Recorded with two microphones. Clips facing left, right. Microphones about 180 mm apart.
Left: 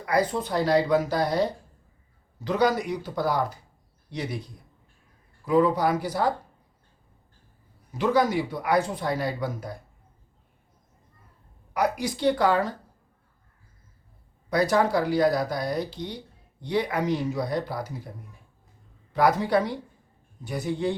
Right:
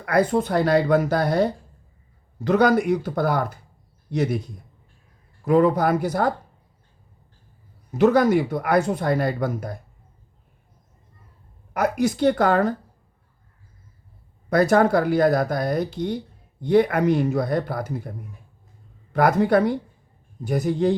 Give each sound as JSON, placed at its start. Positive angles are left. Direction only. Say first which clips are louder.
{"t": 0.0, "sound": "speech", "louder": "right 5 dB", "side_deg": -55}
{"t": 5.5, "sound": "speech", "louder": "right 4 dB", "side_deg": -50}
{"t": 7.9, "sound": "speech", "louder": "right 6 dB", "side_deg": -55}
{"t": 11.7, "sound": "speech", "louder": "right 4 dB", "side_deg": -50}
{"t": 14.5, "sound": "speech", "louder": "right 5 dB", "side_deg": -55}
{"t": 19.1, "sound": "speech", "louder": "right 4 dB", "side_deg": -55}